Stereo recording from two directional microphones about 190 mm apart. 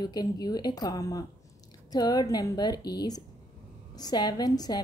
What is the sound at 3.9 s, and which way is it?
Speech, 20° left (ahead or behind).